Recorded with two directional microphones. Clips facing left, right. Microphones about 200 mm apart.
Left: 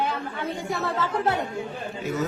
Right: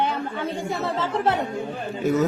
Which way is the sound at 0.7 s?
25° right (ahead or behind).